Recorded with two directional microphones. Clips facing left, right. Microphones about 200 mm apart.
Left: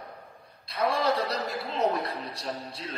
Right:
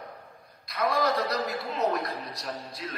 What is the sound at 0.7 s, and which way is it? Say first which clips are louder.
A man's voice: even; 30° left (ahead or behind).